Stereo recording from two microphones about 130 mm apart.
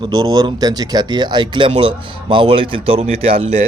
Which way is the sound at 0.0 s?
30° right (ahead or behind).